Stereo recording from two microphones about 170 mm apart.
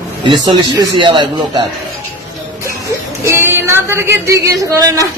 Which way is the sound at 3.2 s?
15° right (ahead or behind).